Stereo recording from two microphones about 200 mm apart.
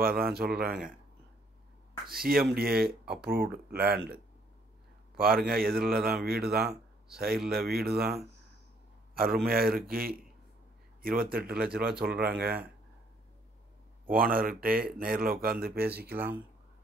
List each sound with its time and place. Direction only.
0.0 s speech: 50° right (ahead or behind)
2.0 s speech: 45° right (ahead or behind)
5.1 s a man's voice: 50° right (ahead or behind)
11.8 s speech: 5° right (ahead or behind)
12.1 s speech: 50° right (ahead or behind)
14.0 s speech: 45° right (ahead or behind)